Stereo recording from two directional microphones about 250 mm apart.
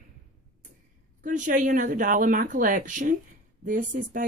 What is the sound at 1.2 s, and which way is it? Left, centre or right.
Speech, right.